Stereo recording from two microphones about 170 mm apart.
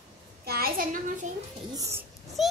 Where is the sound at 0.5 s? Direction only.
60° right (ahead or behind).